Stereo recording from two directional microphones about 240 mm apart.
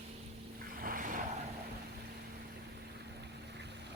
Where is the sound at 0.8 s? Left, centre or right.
Right.